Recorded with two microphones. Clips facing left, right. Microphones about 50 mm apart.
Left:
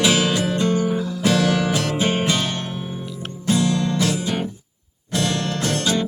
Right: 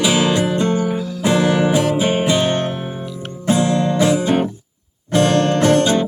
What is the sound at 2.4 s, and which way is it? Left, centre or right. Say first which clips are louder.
Music: right 7 dB; right.